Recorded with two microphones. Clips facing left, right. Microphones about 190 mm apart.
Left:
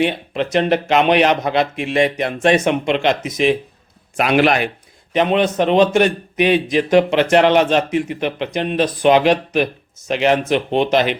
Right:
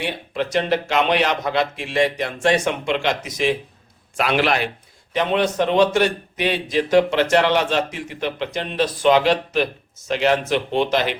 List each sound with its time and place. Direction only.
0.0 s speech: 20° left (ahead or behind)
5.1 s speech: 20° left (ahead or behind)